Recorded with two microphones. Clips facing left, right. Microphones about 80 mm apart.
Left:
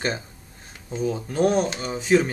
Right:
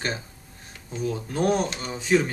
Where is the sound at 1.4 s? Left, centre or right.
Centre.